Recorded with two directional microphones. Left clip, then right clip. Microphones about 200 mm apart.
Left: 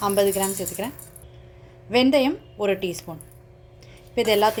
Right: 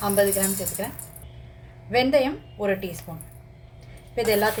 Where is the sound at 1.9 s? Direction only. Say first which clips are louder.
Left 1 dB; 40° left (ahead or behind).